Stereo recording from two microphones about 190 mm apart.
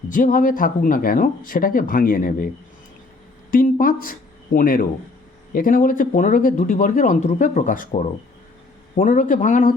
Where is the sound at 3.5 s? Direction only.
45° left (ahead or behind).